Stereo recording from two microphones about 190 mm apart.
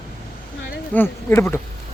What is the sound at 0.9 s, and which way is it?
Speech, 10° left (ahead or behind).